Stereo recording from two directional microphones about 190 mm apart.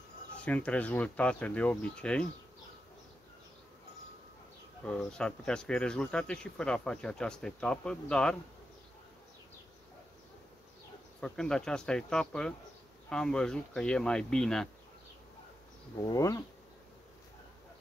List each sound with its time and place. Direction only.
0.5 s speech: 5° left (ahead or behind)
4.8 s speech: 5° left (ahead or behind)
11.1 s speech: 5° left (ahead or behind)
16.0 s speech: 15° left (ahead or behind)